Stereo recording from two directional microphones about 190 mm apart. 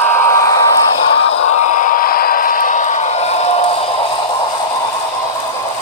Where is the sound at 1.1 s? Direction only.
35° left (ahead or behind).